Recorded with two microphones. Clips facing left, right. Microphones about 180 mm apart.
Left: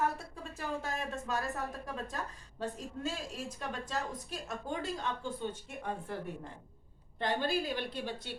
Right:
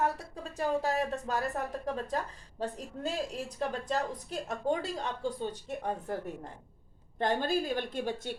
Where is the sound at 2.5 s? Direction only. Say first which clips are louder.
Right 2 dB; 35° right (ahead or behind).